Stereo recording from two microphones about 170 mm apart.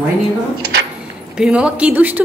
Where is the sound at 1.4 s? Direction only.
5° right (ahead or behind).